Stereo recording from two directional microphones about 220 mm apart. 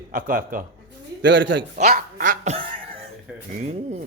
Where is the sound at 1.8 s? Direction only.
40° right (ahead or behind).